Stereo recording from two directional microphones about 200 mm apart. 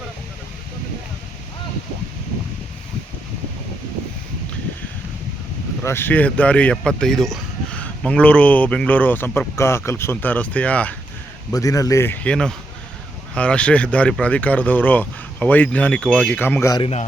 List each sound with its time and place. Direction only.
5.8 s speech: 10° left (ahead or behind)
16.8 s speech: 30° left (ahead or behind)